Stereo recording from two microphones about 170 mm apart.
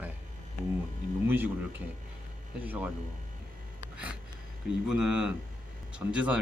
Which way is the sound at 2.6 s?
10° right (ahead or behind).